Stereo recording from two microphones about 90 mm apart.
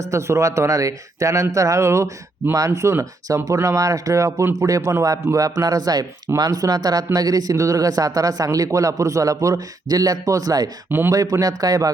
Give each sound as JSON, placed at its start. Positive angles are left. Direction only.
{"t": 0.1, "sound": "speech", "side_deg": -35}
{"t": 10.8, "sound": "speech", "side_deg": -25}
{"t": 11.1, "sound": "speech", "side_deg": -40}